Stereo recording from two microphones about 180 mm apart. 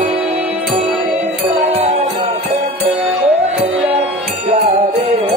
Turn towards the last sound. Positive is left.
turn(degrees=-35)  # may be behind; listen again after turning